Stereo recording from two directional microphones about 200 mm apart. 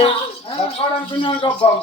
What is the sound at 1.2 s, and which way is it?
Speech, 25° left (ahead or behind).